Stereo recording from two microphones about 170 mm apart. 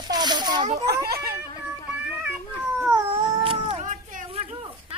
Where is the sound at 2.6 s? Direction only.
5° right (ahead or behind).